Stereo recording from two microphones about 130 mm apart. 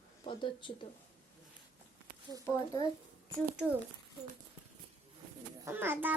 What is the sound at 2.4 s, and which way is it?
Speech, 25° left (ahead or behind).